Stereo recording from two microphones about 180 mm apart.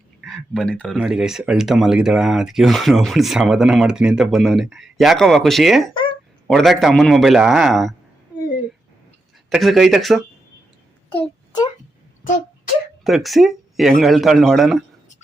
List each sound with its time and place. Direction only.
0.2 s speech: centre (ahead or behind)
5.9 s a sound: 30° left (ahead or behind)
6.5 s speech: centre (ahead or behind)
9.5 s speech: centre (ahead or behind)
11.1 s a sound: 25° left (ahead or behind)
13.1 s speech: centre (ahead or behind)